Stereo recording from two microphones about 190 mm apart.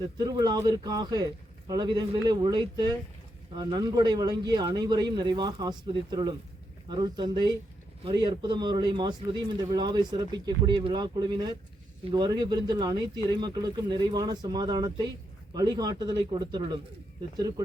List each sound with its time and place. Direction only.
0.2 s a man's voice: 20° right (ahead or behind)